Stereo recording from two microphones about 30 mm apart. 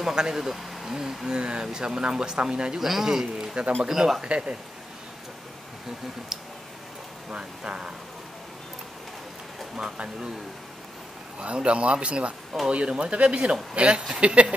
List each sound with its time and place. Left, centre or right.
0.0 s speech: right
2.8 s speech: centre
4.2 s speech: right
7.2 s speech: right
9.8 s speech: right
11.3 s a man's voice: right